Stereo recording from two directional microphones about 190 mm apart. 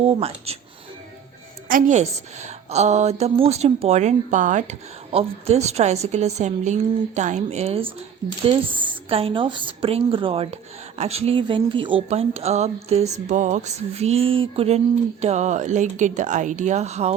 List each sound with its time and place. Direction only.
0.0 s a woman's voice: 30° right (ahead or behind)
1.7 s a woman's voice: 35° right (ahead or behind)